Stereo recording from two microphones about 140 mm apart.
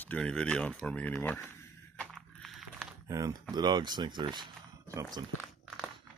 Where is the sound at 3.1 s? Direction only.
25° right (ahead or behind).